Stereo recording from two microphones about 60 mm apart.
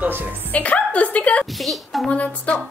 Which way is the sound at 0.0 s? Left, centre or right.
Right.